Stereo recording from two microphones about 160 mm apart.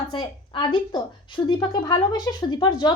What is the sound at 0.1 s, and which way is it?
Speech, 30° left (ahead or behind).